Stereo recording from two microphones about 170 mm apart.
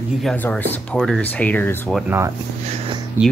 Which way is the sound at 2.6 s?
30° right (ahead or behind).